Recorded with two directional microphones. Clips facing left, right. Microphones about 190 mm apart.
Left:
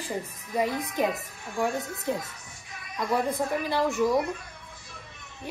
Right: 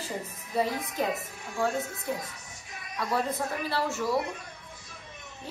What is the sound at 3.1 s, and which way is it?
A woman's voice, 15° left (ahead or behind).